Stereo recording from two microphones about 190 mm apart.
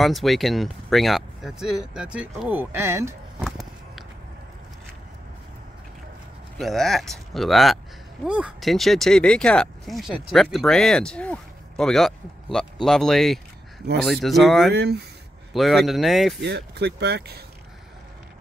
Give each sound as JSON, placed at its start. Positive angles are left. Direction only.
{"t": 0.0, "sound": "speech", "side_deg": 0}
{"t": 3.3, "sound": "walk", "side_deg": 0}
{"t": 6.6, "sound": "speech", "side_deg": 0}
{"t": 14.7, "sound": "speech", "side_deg": -60}
{"t": 15.5, "sound": "speech", "side_deg": 0}
{"t": 16.3, "sound": "speech", "side_deg": -60}